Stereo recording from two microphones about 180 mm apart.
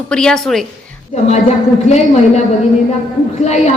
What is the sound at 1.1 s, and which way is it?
A woman's voice, 35° left (ahead or behind).